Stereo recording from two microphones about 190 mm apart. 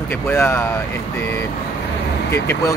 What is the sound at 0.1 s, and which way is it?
Speech, 10° left (ahead or behind).